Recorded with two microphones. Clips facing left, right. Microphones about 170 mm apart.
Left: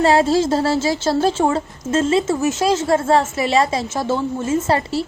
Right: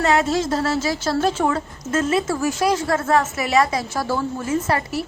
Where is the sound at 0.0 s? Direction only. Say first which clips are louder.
Left 4 dB; 30° left (ahead or behind).